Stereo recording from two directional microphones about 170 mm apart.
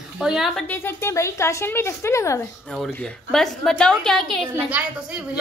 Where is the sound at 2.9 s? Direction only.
5° left (ahead or behind).